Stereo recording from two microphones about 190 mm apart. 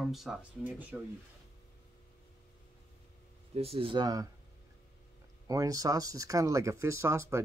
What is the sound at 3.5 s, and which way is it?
Speech, 30° right (ahead or behind).